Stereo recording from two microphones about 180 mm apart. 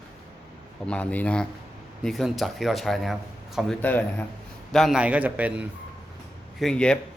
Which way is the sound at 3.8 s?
10° left (ahead or behind).